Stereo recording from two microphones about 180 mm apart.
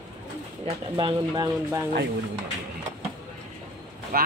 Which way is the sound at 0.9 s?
25° right (ahead or behind).